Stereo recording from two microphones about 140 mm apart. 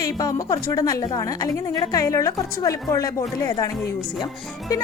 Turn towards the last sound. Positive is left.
turn(degrees=25)  # may be behind; listen again after turning